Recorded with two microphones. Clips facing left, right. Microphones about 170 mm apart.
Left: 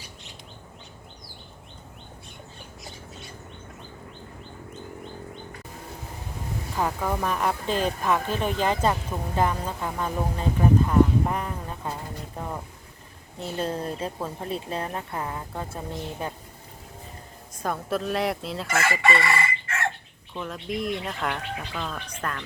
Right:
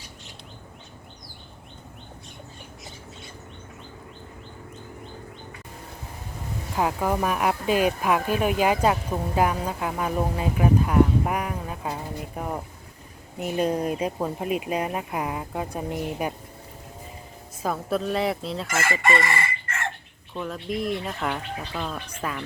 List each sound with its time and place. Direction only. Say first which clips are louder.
6.7 s speech: right 3 dB; 10° right (ahead or behind)
13.4 s speech: right 5 dB; 15° right (ahead or behind)
17.6 s speech: right 2 dB; centre (ahead or behind)
19.2 s chicken: left 1 dB; 70° left (ahead or behind)
20.3 s speech: right 2 dB; centre (ahead or behind)